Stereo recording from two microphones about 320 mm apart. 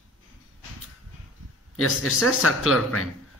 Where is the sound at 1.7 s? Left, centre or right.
Left.